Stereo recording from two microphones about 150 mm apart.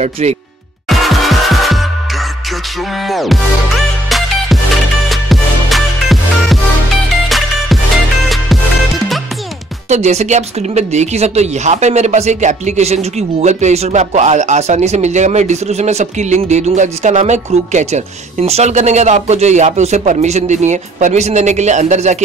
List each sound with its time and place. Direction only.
0.0 s speech: 45° right (ahead or behind)
0.8 s music: centre (ahead or behind)
3.1 s music: centre (ahead or behind)
5.1 s music: centre (ahead or behind)
9.8 s speech: 50° right (ahead or behind)